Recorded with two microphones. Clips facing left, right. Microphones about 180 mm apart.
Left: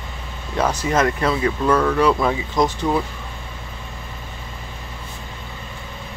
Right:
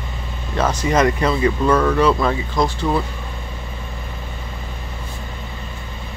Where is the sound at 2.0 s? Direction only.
10° left (ahead or behind).